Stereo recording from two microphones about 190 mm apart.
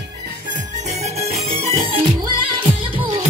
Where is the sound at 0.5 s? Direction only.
35° right (ahead or behind).